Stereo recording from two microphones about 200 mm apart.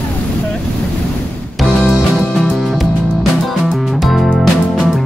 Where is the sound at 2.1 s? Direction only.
Centre (ahead or behind).